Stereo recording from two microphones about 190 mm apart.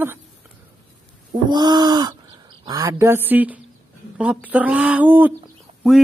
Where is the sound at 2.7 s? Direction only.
20° right (ahead or behind).